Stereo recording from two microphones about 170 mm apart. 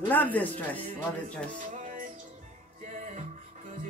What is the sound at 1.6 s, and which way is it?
Music, 50° right (ahead or behind).